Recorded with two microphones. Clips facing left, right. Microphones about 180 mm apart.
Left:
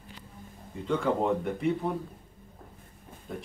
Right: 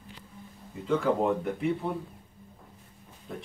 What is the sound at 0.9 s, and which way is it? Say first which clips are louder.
Speech: right 1 dB; centre (ahead or behind).